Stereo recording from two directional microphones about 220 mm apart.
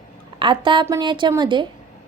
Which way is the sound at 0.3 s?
20° right (ahead or behind).